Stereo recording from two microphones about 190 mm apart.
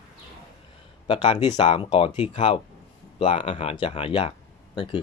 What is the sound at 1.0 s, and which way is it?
Speech, 25° left (ahead or behind).